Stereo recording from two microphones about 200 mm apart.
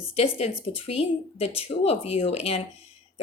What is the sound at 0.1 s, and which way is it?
Speech, 30° left (ahead or behind).